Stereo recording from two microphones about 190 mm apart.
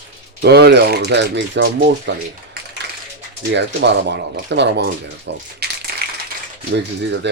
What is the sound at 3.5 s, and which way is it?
Speech, 65° right (ahead or behind).